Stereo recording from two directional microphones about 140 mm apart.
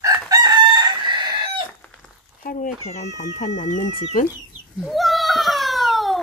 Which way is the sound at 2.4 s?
80° left.